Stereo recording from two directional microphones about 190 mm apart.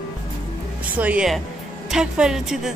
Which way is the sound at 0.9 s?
5° right (ahead or behind).